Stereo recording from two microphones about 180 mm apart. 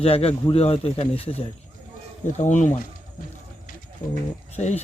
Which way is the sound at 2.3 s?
40° left (ahead or behind).